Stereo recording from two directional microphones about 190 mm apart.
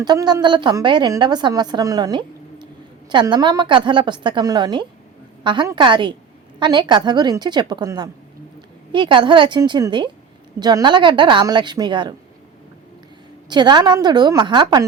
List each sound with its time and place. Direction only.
0.0 s a woman's voice: 20° right (ahead or behind)
13.5 s a woman's voice: 25° right (ahead or behind)